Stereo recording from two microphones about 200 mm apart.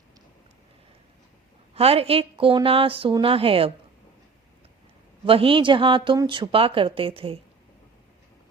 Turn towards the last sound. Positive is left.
turn(degrees=-25)  # may be behind; listen again after turning